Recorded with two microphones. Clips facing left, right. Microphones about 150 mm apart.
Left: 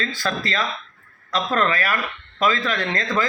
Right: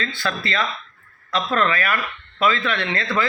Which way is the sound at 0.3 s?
40° left (ahead or behind).